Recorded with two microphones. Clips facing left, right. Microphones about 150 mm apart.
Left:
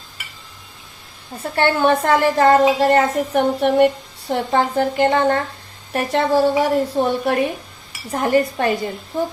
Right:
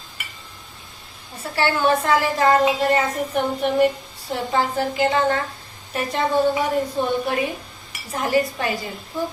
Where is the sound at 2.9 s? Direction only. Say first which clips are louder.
Left 5 dB; 70° left (ahead or behind).